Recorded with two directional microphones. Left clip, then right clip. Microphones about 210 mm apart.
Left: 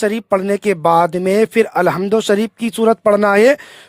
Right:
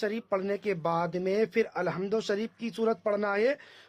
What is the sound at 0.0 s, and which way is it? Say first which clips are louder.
Speech: left 14 dB; 50° left (ahead or behind).